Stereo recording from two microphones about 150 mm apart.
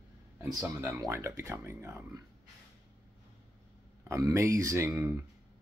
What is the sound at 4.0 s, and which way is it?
Speech, 20° right (ahead or behind).